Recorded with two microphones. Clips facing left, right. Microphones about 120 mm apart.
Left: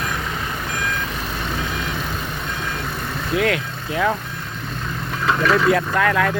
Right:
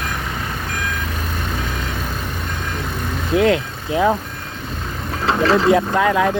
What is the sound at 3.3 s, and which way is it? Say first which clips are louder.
Speech: right 5 dB; 25° right (ahead or behind).